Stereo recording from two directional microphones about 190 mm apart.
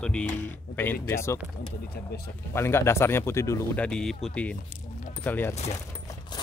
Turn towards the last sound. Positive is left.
turn(degrees=10)  # may be behind; listen again after turning